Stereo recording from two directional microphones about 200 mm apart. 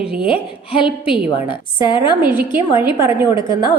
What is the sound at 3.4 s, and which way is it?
Speech, 25° left (ahead or behind).